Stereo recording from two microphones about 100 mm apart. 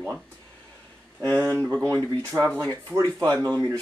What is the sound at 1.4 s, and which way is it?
Speech, 15° left (ahead or behind).